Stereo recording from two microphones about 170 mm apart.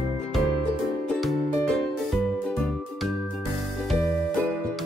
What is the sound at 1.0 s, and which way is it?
Music, 5° left (ahead or behind).